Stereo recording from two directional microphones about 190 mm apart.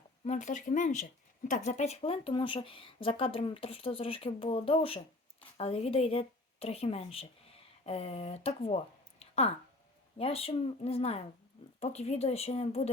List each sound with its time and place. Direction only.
0.3 s a woman's voice: 35° left (ahead or behind)